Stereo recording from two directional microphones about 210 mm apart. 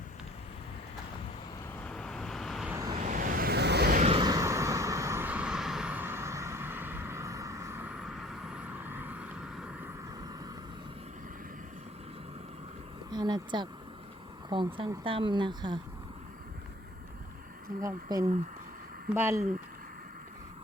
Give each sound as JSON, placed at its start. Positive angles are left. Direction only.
{"t": 1.8, "sound": "vehicle", "side_deg": 5}
{"t": 2.9, "sound": "vehicle", "side_deg": -35}
{"t": 4.0, "sound": "vehicle", "side_deg": -25}
{"t": 13.1, "sound": "a sound", "side_deg": -20}
{"t": 14.5, "sound": "speech", "side_deg": -25}
{"t": 17.8, "sound": "speech", "side_deg": -15}